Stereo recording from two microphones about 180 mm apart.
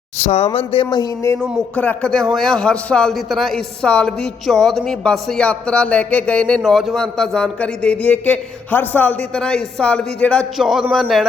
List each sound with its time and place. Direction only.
0.2 s speech: 35° left (ahead or behind); by 1.4 s 20° left (ahead or behind)
1.7 s a man's voice: 10° left (ahead or behind)